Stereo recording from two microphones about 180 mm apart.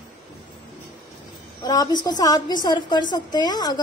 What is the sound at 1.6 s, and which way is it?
A woman's voice, 20° left (ahead or behind).